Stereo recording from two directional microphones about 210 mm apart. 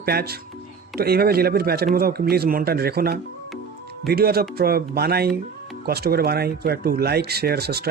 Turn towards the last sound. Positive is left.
turn(degrees=-50)  # may be behind; listen again after turning